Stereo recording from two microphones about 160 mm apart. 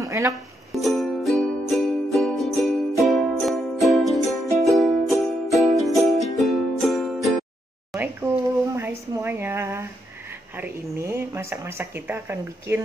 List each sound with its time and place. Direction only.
0.0 s music: 20° right (ahead or behind)
0.3 s music: centre (ahead or behind)
7.9 s a sound: 10° right (ahead or behind)
8.7 s speech: 15° right (ahead or behind)